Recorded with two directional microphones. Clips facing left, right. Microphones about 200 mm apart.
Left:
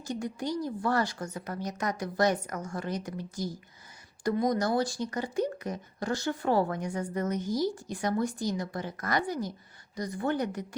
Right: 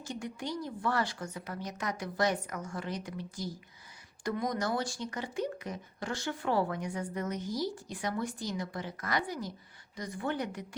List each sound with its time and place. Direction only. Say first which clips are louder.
0.1 s a woman's voice: left 5 dB; 40° left (ahead or behind)